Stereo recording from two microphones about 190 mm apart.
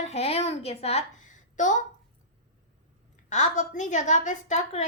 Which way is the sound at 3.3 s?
40° left (ahead or behind).